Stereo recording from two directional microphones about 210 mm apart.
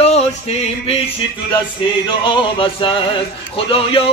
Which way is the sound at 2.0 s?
25° left (ahead or behind).